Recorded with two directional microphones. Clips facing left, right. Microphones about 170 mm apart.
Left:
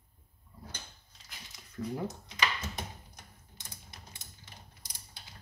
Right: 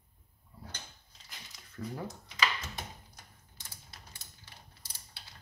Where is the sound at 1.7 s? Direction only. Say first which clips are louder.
Left 4 dB; 15° left (ahead or behind).